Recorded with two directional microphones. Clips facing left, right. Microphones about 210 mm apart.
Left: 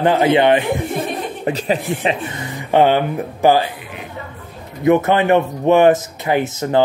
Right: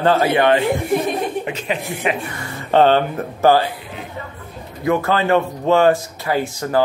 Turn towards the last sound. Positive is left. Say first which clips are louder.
# left 3 dB
turn(degrees=20)  # may be behind; listen again after turning